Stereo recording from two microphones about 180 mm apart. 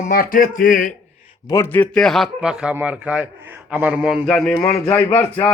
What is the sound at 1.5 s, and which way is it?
Speech, 15° left (ahead or behind).